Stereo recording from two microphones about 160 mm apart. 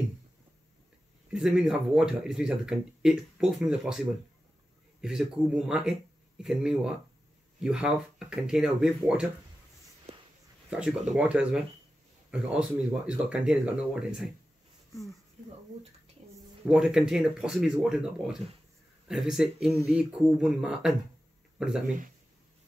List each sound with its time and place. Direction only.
1.3 s speech: 5° right (ahead or behind)
5.0 s speech: 5° right (ahead or behind)
10.1 s a sound: 40° right (ahead or behind)
10.7 s speech: 5° right (ahead or behind)
16.6 s speech: 5° right (ahead or behind)